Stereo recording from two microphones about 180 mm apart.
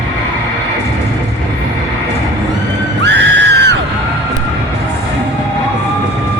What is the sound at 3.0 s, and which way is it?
Music, 75° right (ahead or behind).